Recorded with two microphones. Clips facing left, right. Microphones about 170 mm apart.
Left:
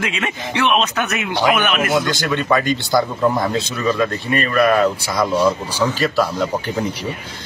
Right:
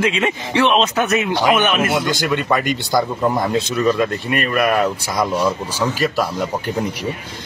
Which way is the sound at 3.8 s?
Centre (ahead or behind).